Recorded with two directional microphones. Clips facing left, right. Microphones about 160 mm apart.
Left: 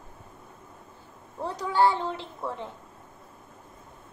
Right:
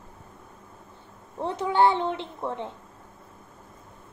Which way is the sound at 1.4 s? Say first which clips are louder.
Right 2 dB; 25° right (ahead or behind).